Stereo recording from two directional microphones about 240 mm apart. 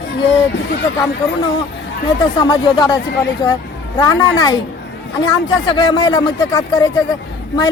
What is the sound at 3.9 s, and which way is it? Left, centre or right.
Speech, centre.